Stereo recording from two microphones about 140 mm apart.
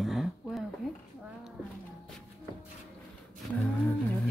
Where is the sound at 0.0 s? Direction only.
Centre (ahead or behind).